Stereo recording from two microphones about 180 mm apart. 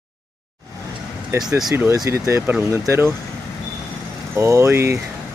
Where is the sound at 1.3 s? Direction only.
15° right (ahead or behind).